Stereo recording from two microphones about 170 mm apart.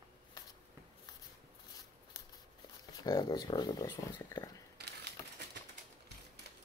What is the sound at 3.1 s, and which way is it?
Speech, 25° left (ahead or behind).